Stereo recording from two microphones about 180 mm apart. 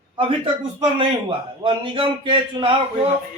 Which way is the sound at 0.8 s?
30° right (ahead or behind).